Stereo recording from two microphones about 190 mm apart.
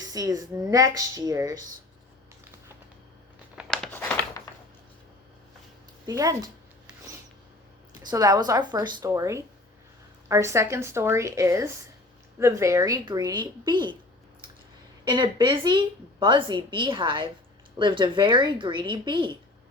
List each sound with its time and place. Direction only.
0.0 s speech: 20° right (ahead or behind)
3.5 s a sound: centre (ahead or behind)
6.1 s speech: 20° right (ahead or behind)
8.1 s a woman's voice: 20° right (ahead or behind)
15.0 s speech: 25° right (ahead or behind)